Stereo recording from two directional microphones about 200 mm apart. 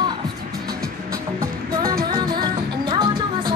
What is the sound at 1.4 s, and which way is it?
Music, 15° right (ahead or behind).